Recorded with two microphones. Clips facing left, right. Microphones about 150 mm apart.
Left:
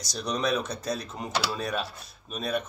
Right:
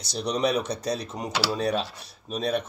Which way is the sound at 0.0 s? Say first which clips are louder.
Right 4 dB; 30° right (ahead or behind).